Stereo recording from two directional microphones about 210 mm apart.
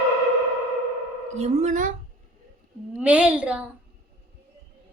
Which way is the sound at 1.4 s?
30° right (ahead or behind).